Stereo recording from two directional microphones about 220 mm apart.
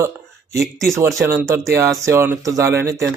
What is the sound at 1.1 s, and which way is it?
Speech, 10° right (ahead or behind).